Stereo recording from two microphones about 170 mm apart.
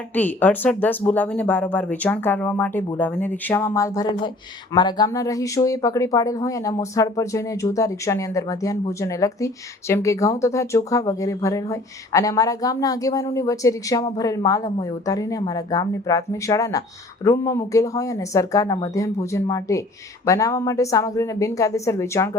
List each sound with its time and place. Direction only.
0.1 s speech: 10° left (ahead or behind)